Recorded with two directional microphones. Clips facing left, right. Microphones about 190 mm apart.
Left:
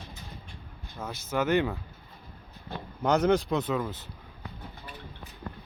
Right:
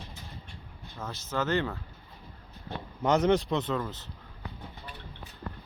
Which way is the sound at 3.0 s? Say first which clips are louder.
Even; centre (ahead or behind).